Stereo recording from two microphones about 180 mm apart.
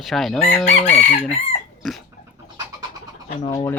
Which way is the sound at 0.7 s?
40° left (ahead or behind).